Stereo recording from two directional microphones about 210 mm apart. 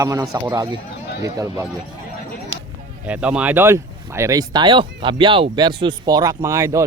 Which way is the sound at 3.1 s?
5° right (ahead or behind).